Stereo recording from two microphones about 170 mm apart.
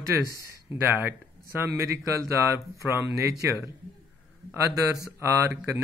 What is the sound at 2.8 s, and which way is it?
Speech, 15° right (ahead or behind).